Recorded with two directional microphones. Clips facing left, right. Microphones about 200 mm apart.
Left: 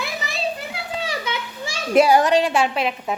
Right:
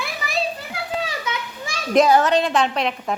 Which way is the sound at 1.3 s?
25° left (ahead or behind).